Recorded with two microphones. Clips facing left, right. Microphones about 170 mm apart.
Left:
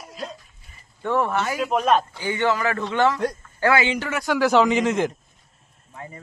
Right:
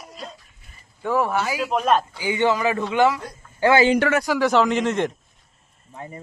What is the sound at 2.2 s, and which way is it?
Speech, 15° right (ahead or behind).